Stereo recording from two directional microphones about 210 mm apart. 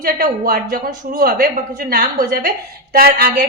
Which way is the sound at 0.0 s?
45° right (ahead or behind).